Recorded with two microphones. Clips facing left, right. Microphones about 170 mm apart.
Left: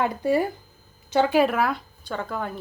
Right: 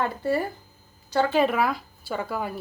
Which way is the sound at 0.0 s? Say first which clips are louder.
Left 3 dB; 15° left (ahead or behind).